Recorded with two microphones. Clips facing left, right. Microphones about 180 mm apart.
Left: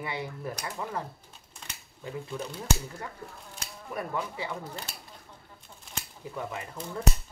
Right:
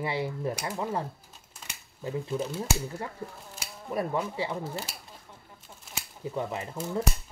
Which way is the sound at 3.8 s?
30° right (ahead or behind).